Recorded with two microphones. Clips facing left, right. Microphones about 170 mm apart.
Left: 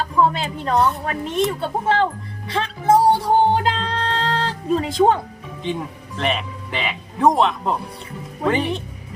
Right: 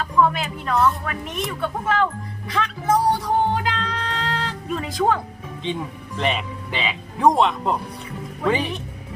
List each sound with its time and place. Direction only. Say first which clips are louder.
0.0 s a woman's voice: left 1 dB; 30° left (ahead or behind)
2.5 s music: left 4 dB; 30° left (ahead or behind)
6.1 s speech: left 1 dB; centre (ahead or behind)